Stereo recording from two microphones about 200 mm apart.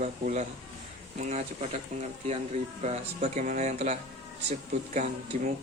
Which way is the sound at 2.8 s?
35° right (ahead or behind).